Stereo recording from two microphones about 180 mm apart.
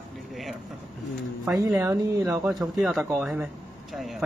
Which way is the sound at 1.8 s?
15° right (ahead or behind).